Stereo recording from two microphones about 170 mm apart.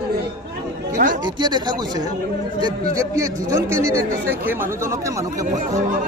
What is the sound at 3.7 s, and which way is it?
Speech, 15° right (ahead or behind).